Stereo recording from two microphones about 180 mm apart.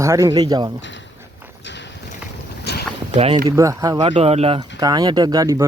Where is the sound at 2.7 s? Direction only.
65° left (ahead or behind).